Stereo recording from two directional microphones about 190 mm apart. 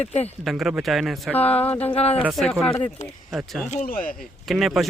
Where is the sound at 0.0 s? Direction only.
35° left (ahead or behind).